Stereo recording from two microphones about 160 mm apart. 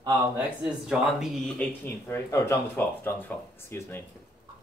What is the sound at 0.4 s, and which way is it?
Speech, 5° right (ahead or behind).